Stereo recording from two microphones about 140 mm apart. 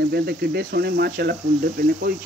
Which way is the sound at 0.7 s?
90° right.